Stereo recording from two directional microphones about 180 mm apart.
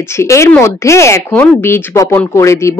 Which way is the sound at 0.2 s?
15° left (ahead or behind).